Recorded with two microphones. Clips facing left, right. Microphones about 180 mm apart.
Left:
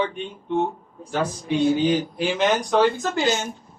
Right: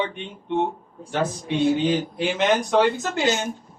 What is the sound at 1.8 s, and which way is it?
Speech, 25° right (ahead or behind).